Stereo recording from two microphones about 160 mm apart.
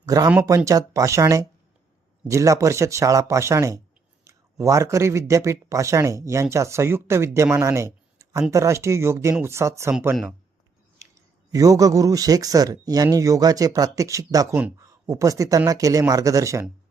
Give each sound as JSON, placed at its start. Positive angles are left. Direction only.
{"t": 0.0, "sound": "speech", "side_deg": -20}
{"t": 11.5, "sound": "speech", "side_deg": -20}